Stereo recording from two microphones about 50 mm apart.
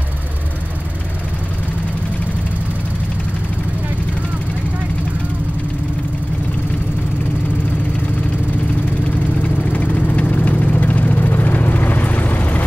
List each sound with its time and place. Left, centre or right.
9.4 s vehicle: left